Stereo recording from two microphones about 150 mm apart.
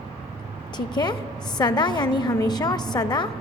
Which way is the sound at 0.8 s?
30° left (ahead or behind).